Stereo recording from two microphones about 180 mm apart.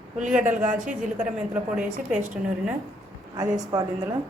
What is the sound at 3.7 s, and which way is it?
Speech, 20° right (ahead or behind).